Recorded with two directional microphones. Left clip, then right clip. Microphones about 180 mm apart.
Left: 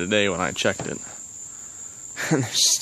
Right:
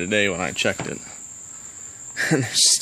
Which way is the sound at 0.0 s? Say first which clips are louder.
Even; 10° left (ahead or behind).